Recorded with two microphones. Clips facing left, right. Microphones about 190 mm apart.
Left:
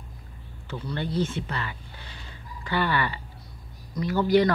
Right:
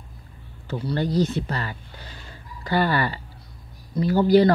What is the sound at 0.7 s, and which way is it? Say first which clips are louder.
Speech: right 6 dB; 35° right (ahead or behind).